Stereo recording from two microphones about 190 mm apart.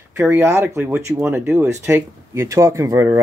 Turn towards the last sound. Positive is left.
turn(degrees=-15)  # may be behind; listen again after turning